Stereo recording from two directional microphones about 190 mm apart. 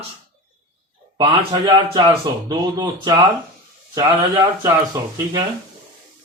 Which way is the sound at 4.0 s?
20° right (ahead or behind).